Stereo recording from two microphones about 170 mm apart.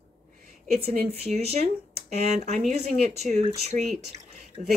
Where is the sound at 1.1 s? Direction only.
35° right (ahead or behind).